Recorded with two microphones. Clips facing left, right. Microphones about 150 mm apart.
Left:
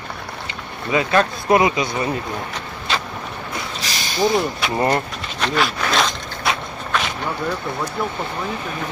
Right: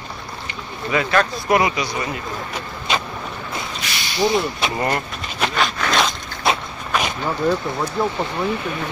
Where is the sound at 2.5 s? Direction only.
10° right (ahead or behind).